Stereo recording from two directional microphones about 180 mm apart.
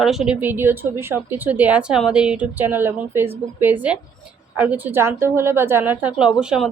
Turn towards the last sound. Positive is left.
turn(degrees=-5)  # may be behind; listen again after turning